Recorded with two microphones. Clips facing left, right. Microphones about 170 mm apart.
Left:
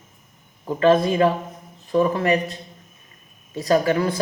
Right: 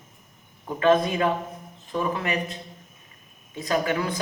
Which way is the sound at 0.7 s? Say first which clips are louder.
Left 4 dB; 30° left (ahead or behind).